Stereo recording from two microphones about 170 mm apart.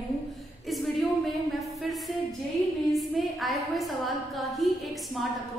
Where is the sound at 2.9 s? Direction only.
Centre (ahead or behind).